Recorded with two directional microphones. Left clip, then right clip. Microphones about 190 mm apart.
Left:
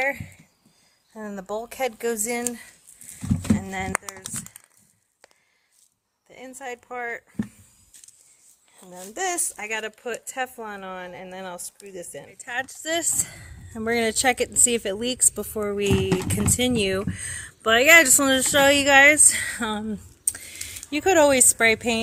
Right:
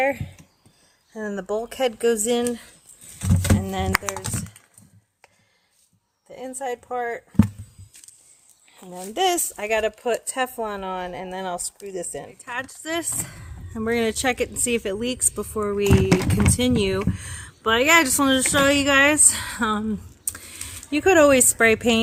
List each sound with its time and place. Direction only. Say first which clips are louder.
0.0 s a woman's voice: right 3 dB; 5° left (ahead or behind)
4.2 s speech: right 4 dB; 55° left (ahead or behind)
6.2 s a woman's voice: right 6 dB; 10° left (ahead or behind)
8.8 s a child's voice: right 7 dB; 5° right (ahead or behind)
20.2 s a sound: left 7 dB; 10° left (ahead or behind)
20.9 s speech: right 2 dB; 5° left (ahead or behind)